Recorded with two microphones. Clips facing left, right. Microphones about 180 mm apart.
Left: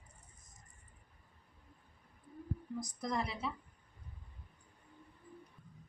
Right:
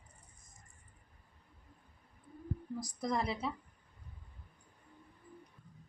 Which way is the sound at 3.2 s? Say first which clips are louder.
Right 1 dB; 35° right (ahead or behind).